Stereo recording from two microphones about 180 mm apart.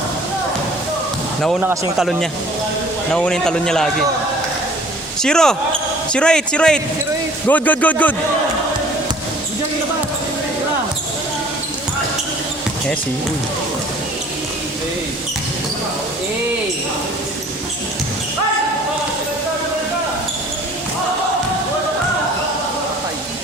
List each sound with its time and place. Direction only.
1.6 s speech: 15° right (ahead or behind)
3.1 s a man's voice: 5° left (ahead or behind)
5.2 s a man's voice: 5° left (ahead or behind)